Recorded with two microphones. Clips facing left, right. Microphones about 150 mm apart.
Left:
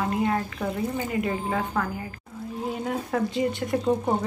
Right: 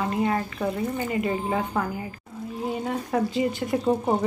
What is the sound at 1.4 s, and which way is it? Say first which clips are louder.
Speech: right 1 dB; 15° right (ahead or behind).